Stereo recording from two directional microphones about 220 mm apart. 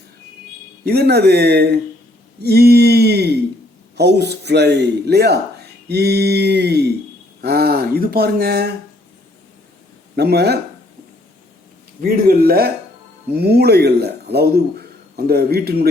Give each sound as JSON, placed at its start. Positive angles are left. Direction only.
{"t": 0.9, "sound": "a man's voice", "side_deg": -45}
{"t": 10.2, "sound": "a man's voice", "side_deg": -50}
{"t": 12.0, "sound": "a man's voice", "side_deg": -45}